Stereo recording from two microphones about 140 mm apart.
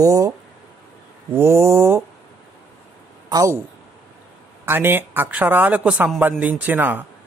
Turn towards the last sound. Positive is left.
turn(degrees=-15)  # may be behind; listen again after turning